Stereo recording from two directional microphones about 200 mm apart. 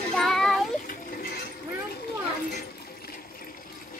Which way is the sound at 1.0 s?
45° left (ahead or behind).